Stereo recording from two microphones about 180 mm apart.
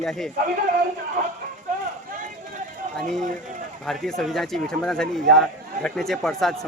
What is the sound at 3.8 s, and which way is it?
Speech, centre (ahead or behind).